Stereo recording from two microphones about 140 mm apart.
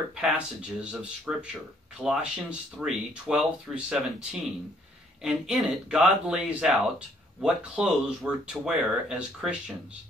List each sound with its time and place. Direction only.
0.1 s speech: 5° right (ahead or behind)